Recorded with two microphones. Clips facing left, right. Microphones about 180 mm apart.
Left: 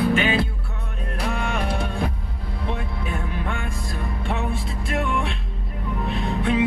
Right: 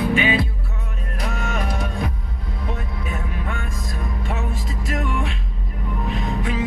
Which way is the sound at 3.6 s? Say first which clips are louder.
Even; 30° left (ahead or behind).